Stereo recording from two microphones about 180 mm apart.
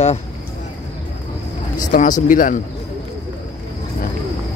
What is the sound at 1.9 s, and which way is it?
Speech, 45° left (ahead or behind).